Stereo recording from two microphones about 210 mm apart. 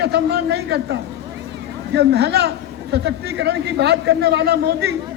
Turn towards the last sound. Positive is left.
turn(degrees=-50)  # may be behind; listen again after turning